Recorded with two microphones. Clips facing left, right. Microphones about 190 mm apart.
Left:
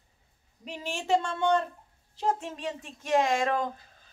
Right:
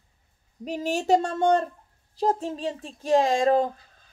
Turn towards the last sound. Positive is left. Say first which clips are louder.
# right 6 dB
turn(degrees=-30)  # may be behind; listen again after turning